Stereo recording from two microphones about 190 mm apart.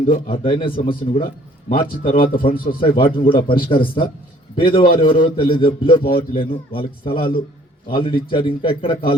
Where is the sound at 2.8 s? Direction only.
25° left (ahead or behind).